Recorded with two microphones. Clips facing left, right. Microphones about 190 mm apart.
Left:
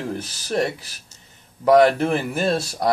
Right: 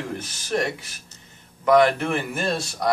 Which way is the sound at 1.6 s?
35° left (ahead or behind).